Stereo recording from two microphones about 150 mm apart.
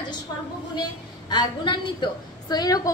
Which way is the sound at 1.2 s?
30° left (ahead or behind).